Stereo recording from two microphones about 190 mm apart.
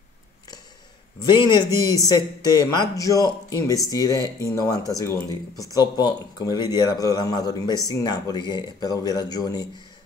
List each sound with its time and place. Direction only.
1.2 s speech: 25° left (ahead or behind)